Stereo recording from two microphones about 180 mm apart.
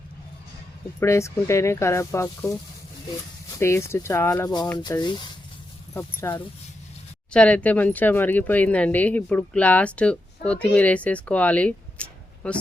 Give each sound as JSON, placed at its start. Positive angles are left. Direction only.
{"t": 0.9, "sound": "speech", "side_deg": 15}
{"t": 3.6, "sound": "speech", "side_deg": 15}
{"t": 7.3, "sound": "speech", "side_deg": 5}